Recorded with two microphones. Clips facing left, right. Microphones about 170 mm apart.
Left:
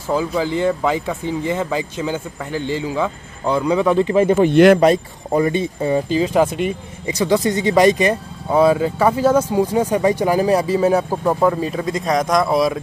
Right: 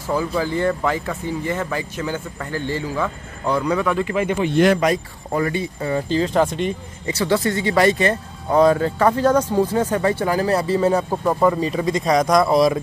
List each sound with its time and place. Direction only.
0.1 s speech: 15° left (ahead or behind)